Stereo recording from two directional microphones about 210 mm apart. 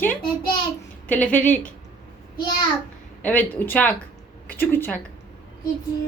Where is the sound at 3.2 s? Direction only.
10° left (ahead or behind).